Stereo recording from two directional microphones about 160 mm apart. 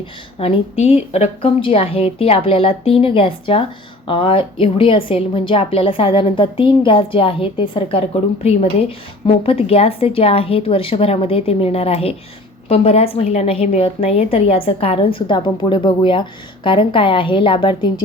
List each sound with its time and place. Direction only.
0.3 s a woman's voice: 35° left (ahead or behind)